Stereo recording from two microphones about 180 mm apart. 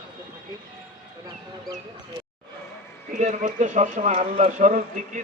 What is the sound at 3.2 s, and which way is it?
Speech, 40° right (ahead or behind).